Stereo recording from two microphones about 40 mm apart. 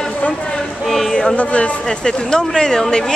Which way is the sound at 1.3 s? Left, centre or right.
Left.